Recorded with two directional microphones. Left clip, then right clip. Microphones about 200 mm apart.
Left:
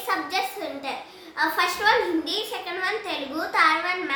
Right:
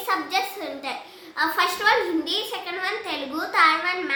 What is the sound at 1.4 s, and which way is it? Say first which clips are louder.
A child's voice: right 1 dB; 10° right (ahead or behind).